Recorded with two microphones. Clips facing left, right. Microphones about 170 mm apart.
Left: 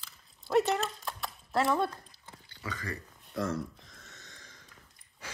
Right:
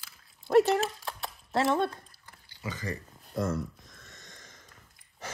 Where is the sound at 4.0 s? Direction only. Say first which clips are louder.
Right 1 dB; 45° right (ahead or behind).